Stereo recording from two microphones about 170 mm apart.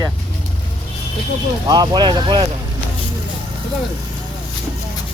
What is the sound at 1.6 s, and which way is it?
Speech, 25° right (ahead or behind).